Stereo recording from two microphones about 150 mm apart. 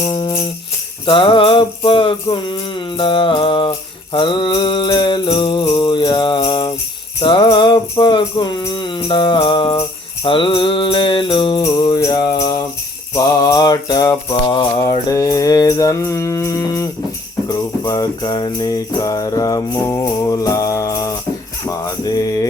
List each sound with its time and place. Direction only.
0.1 s jingle bell: 35° left (ahead or behind)
1.0 s music: 35° left (ahead or behind)
10.2 s mantra: 35° left (ahead or behind)
11.6 s music: 25° left (ahead or behind)
13.1 s mantra: 25° left (ahead or behind)
17.5 s music: 25° left (ahead or behind)
21.7 s mantra: 25° left (ahead or behind)